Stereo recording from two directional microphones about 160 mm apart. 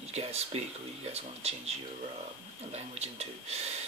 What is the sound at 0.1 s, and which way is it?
Speech, 40° right (ahead or behind).